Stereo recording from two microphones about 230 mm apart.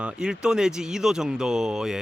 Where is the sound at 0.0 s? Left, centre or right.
Centre.